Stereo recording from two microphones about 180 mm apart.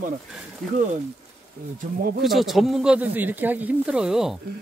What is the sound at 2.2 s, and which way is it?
Speech, centre (ahead or behind).